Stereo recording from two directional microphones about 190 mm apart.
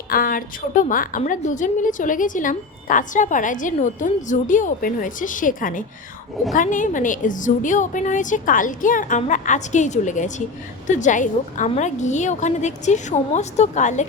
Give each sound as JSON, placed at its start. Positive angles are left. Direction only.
{"t": 0.1, "sound": "a woman's voice", "side_deg": 50}